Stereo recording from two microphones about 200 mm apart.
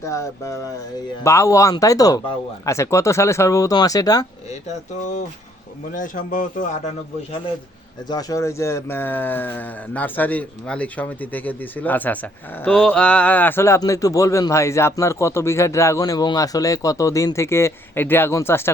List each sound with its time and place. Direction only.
0.0 s a man's voice: 15° left (ahead or behind)
5.9 s a man's voice: 40° left (ahead or behind)
8.1 s a man's voice: 15° left (ahead or behind)